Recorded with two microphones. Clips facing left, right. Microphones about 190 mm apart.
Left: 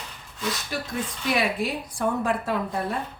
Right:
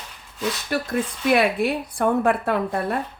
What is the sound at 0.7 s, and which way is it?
A woman's voice, 60° right (ahead or behind).